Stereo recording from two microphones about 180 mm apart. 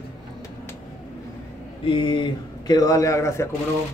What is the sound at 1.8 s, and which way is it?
A man's voice, 30° left (ahead or behind).